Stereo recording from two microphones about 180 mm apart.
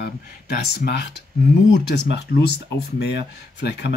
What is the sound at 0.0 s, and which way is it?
Speech, 65° left (ahead or behind).